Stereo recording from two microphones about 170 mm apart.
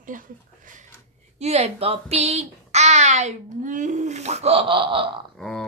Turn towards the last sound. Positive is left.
turn(degrees=0)  # may be behind; listen again after turning